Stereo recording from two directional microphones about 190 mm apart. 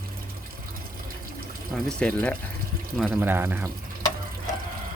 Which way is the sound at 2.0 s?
5° left (ahead or behind).